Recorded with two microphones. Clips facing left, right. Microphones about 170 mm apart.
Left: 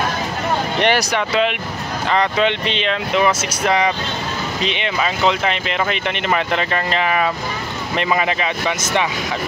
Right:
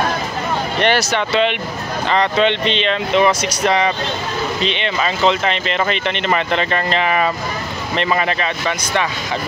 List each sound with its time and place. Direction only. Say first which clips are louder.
0.7 s speech: right 2 dB; 15° left (ahead or behind)